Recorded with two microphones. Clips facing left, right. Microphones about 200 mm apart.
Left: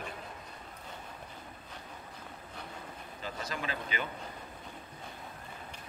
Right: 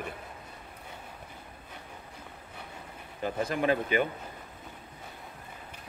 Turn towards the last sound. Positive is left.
turn(degrees=-55)  # may be behind; listen again after turning